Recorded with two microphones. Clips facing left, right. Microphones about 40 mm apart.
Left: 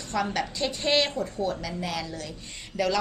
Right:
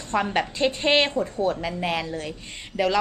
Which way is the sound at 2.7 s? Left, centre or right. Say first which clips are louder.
Right 3 dB; right.